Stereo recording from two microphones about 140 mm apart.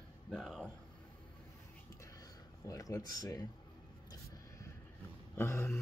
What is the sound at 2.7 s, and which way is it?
Speech, 25° left (ahead or behind).